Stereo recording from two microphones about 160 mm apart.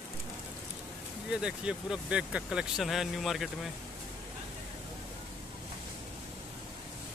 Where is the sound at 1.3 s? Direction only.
5° right (ahead or behind).